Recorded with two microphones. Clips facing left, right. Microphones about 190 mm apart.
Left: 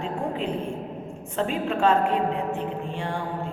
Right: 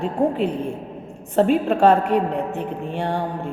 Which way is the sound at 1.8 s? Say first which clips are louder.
Right 3 dB; 65° right (ahead or behind).